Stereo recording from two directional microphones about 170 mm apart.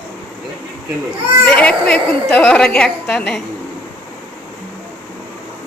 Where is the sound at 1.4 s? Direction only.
5° left (ahead or behind).